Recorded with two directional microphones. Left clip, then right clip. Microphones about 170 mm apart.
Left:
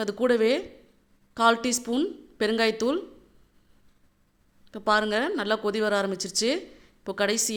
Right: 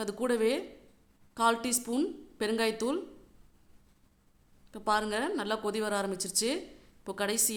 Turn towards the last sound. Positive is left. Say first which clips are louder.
# left 6 dB
turn(degrees=15)  # may be behind; listen again after turning